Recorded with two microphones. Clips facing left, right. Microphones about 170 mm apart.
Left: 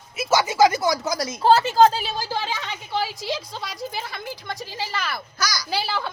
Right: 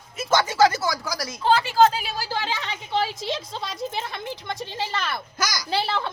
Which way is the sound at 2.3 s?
15° left (ahead or behind).